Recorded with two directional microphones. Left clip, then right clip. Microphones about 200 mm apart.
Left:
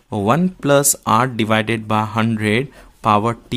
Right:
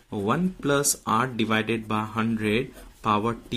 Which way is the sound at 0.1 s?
40° left (ahead or behind).